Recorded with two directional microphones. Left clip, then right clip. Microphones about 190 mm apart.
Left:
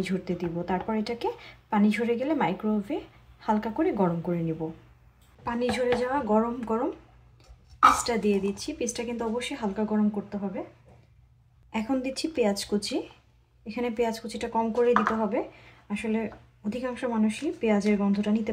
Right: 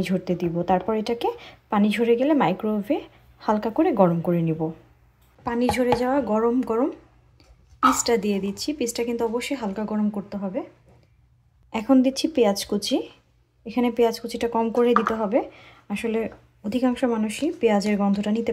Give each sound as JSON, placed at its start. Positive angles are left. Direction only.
{"t": 0.0, "sound": "speech", "side_deg": -35}
{"t": 5.4, "sound": "speech", "side_deg": -45}
{"t": 8.0, "sound": "speech", "side_deg": -40}
{"t": 11.7, "sound": "speech", "side_deg": -40}